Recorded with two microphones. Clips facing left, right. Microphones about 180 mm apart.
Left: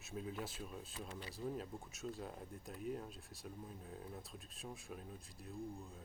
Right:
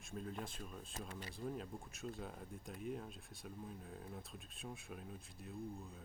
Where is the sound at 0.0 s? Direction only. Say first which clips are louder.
Left 1 dB; 5° left (ahead or behind).